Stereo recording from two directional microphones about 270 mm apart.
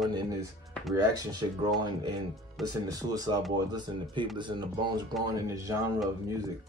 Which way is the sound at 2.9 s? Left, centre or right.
Centre.